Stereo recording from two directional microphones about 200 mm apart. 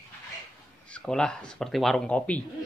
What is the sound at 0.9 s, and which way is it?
A man's voice, 5° left (ahead or behind).